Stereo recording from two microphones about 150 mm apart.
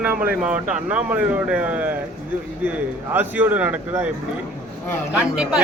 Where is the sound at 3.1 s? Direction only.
10° right (ahead or behind).